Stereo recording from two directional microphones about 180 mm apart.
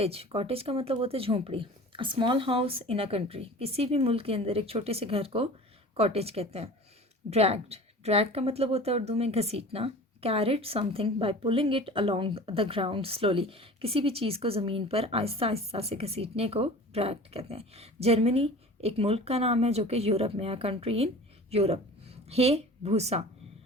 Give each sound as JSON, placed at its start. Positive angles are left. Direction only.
{"t": 0.0, "sound": "a woman's voice", "side_deg": -35}